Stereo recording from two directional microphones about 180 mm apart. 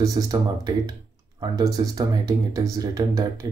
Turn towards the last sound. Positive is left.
turn(degrees=-20)  # may be behind; listen again after turning